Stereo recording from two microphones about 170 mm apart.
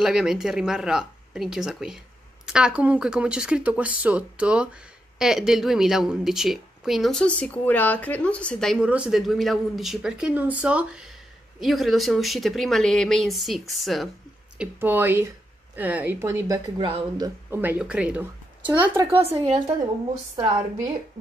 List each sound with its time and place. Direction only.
0.0 s a woman's voice: 5° right (ahead or behind)
14.6 s speech: 10° right (ahead or behind)
16.7 s speech: 30° right (ahead or behind)
17.5 s speech: 10° right (ahead or behind)